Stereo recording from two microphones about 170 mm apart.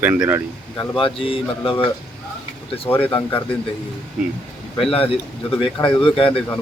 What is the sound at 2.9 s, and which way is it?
Speech, 10° left (ahead or behind).